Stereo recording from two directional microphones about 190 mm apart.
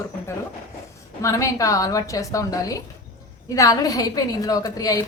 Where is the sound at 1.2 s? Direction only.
15° left (ahead or behind).